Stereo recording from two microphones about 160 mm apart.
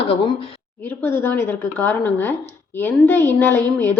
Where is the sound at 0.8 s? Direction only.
15° left (ahead or behind).